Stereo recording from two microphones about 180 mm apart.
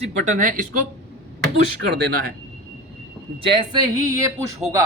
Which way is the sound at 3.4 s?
25° right (ahead or behind).